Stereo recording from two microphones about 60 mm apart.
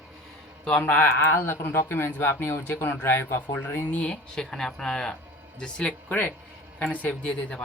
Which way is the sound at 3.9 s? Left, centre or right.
Centre.